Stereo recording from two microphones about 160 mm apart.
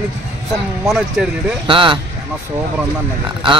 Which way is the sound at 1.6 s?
35° right (ahead or behind).